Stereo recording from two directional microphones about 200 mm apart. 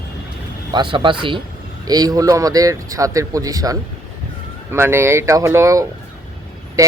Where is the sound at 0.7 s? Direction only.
25° right (ahead or behind).